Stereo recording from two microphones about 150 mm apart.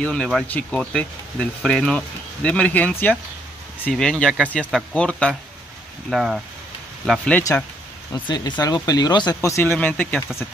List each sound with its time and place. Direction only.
0.0 s speech: 5° left (ahead or behind)
8.1 s speech: 30° left (ahead or behind); by 10.2 s 10° left (ahead or behind)